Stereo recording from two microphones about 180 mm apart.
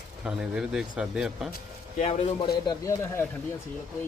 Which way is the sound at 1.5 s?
40° left (ahead or behind).